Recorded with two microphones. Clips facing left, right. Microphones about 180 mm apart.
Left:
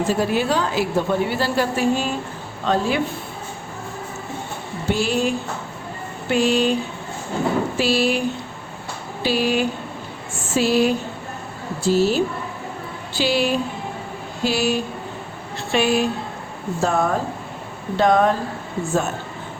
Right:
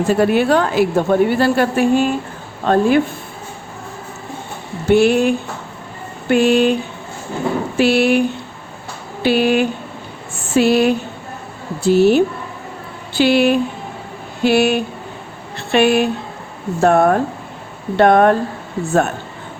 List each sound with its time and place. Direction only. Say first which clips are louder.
0.1 s a woman's voice: right 9 dB; 60° right (ahead or behind)
4.9 s a woman's voice: right 8 dB; 60° right (ahead or behind)
7.8 s a woman's voice: right 9 dB; 60° right (ahead or behind)
9.2 s a woman's voice: right 6 dB; 60° right (ahead or behind)